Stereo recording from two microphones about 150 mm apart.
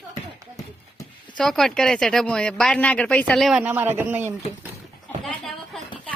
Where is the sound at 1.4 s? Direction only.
5° left (ahead or behind).